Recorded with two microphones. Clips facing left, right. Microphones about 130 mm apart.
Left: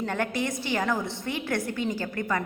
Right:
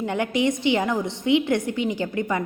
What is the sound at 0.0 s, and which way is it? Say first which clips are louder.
A woman's voice: right 6 dB; 15° right (ahead or behind).